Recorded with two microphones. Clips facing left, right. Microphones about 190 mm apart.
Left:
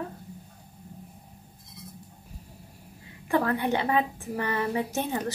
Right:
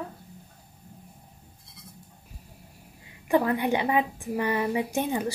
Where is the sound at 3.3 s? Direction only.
15° right (ahead or behind).